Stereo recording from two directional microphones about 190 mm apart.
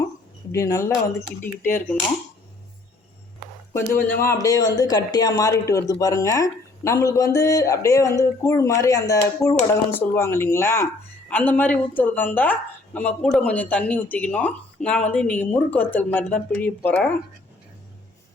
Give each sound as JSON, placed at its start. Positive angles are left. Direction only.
{"t": 0.5, "sound": "speech", "side_deg": 15}
{"t": 3.7, "sound": "speech", "side_deg": 15}